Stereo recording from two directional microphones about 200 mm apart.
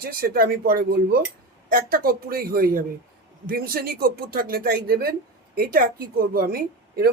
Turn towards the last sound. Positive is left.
turn(degrees=-50)  # may be behind; listen again after turning